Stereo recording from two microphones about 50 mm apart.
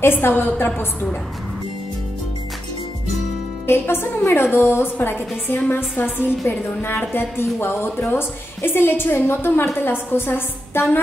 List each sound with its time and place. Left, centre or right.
0.0 s a woman's voice: left
3.6 s a woman's voice: left